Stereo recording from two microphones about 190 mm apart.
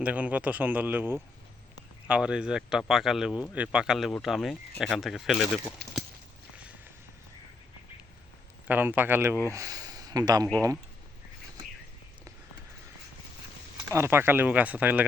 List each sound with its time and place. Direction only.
0.0 s speech: 10° right (ahead or behind)
5.8 s speech: 65° right (ahead or behind)
8.6 s speech: 10° right (ahead or behind)
13.9 s speech: 15° right (ahead or behind)